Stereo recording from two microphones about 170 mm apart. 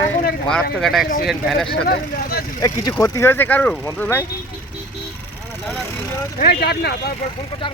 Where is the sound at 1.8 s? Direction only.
60° left (ahead or behind).